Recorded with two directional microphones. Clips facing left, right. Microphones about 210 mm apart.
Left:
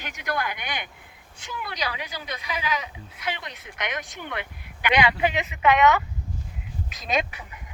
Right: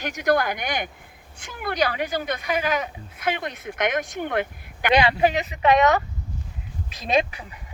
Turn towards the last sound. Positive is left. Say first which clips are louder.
# right 5 dB
turn(degrees=-30)  # may be behind; listen again after turning